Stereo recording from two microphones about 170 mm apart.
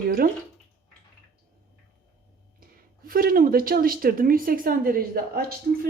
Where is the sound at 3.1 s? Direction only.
55° right (ahead or behind).